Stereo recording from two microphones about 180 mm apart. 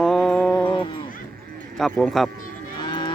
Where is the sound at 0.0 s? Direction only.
5° left (ahead or behind).